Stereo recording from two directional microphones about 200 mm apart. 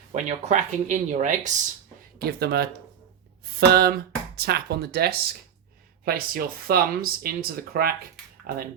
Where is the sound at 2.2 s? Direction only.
50° right (ahead or behind).